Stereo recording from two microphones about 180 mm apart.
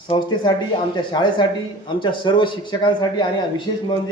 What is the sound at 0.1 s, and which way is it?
A man's voice, 25° left (ahead or behind).